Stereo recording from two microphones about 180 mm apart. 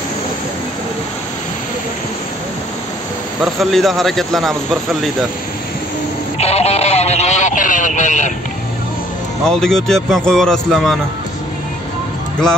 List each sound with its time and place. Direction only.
3.5 s speech: centre (ahead or behind)
6.3 s a sound: 35° left (ahead or behind)
9.5 s speech: centre (ahead or behind)